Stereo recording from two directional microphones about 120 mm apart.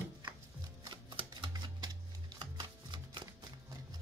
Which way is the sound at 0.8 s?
40° right (ahead or behind).